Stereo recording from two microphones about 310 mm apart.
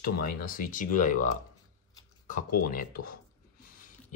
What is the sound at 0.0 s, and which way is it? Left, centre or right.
Speech, left.